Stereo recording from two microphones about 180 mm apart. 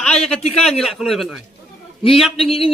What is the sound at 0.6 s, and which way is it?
Speech, centre (ahead or behind).